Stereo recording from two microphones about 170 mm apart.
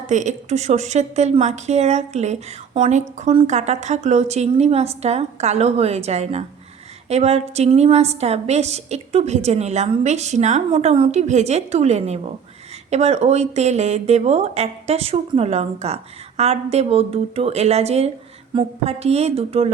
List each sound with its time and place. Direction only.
0.1 s a woman's voice: 45° right (ahead or behind)